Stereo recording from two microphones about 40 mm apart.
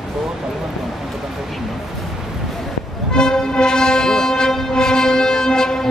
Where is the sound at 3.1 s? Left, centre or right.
Centre.